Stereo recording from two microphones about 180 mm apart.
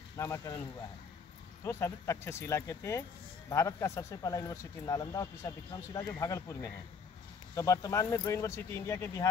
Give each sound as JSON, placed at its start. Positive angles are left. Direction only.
{"t": 0.2, "sound": "speech", "side_deg": 15}
{"t": 1.6, "sound": "speech", "side_deg": 15}